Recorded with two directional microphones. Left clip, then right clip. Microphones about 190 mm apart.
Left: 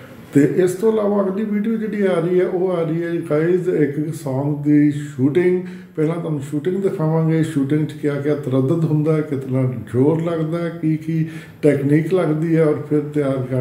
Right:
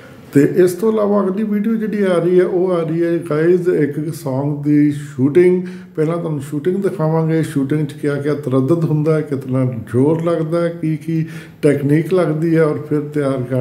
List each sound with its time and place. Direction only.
0.3 s speech: 30° right (ahead or behind)